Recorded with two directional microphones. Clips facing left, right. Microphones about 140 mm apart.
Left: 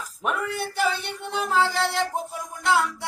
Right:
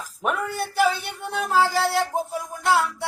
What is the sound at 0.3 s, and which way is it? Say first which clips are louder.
Speech: right 2 dB; centre (ahead or behind).